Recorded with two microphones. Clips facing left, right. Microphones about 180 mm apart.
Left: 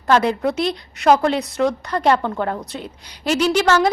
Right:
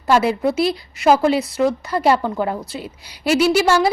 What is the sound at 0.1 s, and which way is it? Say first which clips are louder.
A woman's voice: right 1 dB; 5° right (ahead or behind).